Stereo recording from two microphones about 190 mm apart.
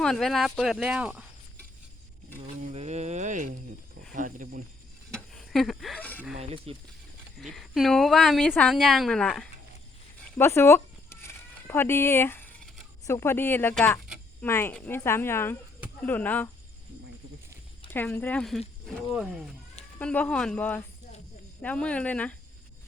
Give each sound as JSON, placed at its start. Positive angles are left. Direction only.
{"t": 0.0, "sound": "a woman's voice", "side_deg": 0}
{"t": 2.4, "sound": "a sound", "side_deg": -35}
{"t": 4.1, "sound": "snake", "side_deg": -45}
{"t": 5.1, "sound": "a sound", "side_deg": 0}
{"t": 6.3, "sound": "speech", "side_deg": -35}
{"t": 7.3, "sound": "a woman's voice", "side_deg": 0}
{"t": 10.3, "sound": "chicken", "side_deg": 10}
{"t": 13.1, "sound": "speech", "side_deg": 15}
{"t": 17.9, "sound": "a woman's voice", "side_deg": 10}